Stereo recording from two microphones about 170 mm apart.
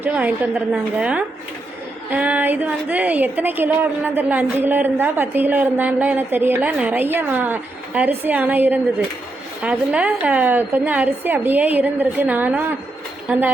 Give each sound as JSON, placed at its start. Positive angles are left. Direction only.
{"t": 0.0, "sound": "a woman's voice", "side_deg": -10}